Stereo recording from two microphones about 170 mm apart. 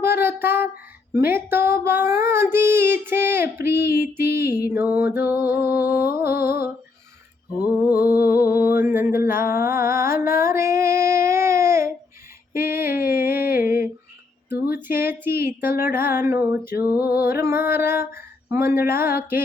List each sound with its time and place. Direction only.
0.0 s child singing: 15° right (ahead or behind)
7.6 s a sound: 10° right (ahead or behind)
8.3 s music: 10° right (ahead or behind)
12.5 s a sound: 15° right (ahead or behind)
14.5 s speech: 10° right (ahead or behind)
15.8 s female singing: 15° right (ahead or behind)